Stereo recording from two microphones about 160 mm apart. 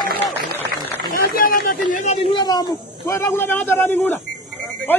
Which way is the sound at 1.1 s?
65° left (ahead or behind).